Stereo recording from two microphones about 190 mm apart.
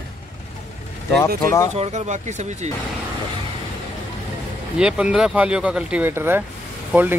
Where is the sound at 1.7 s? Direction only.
35° right (ahead or behind).